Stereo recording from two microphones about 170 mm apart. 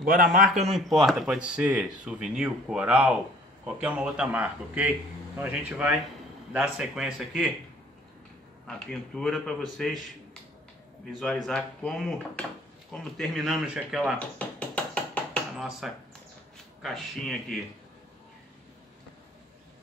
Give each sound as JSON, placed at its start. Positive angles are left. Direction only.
{"t": 0.0, "sound": "a man's voice", "side_deg": -55}
{"t": 0.7, "sound": "speech", "side_deg": 0}
{"t": 8.6, "sound": "speech", "side_deg": 5}
{"t": 11.4, "sound": "speech", "side_deg": 5}
{"t": 14.1, "sound": "a sound", "side_deg": 5}
{"t": 16.8, "sound": "speech", "side_deg": 0}